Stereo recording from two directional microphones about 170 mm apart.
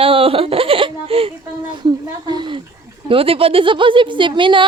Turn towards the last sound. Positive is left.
turn(degrees=-30)  # may be behind; listen again after turning